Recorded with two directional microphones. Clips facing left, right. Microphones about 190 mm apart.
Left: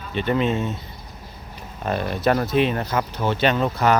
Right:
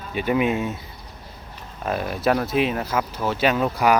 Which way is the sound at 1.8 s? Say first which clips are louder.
Left 1 dB; 5° right (ahead or behind).